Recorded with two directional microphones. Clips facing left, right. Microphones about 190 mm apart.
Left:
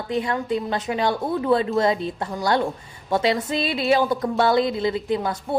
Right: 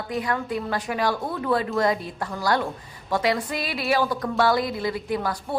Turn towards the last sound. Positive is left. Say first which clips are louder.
# left 3 dB
turn(degrees=25)  # may be behind; listen again after turning